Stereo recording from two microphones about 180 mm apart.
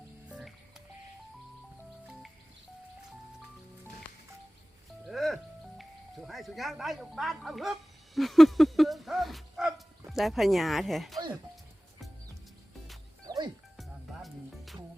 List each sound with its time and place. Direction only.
0.3 s music: centre (ahead or behind)
5.0 s music: centre (ahead or behind)
13.2 s music: 20° right (ahead or behind)
13.7 s music: centre (ahead or behind)